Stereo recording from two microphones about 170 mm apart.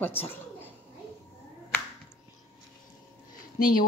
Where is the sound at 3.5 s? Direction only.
55° left (ahead or behind).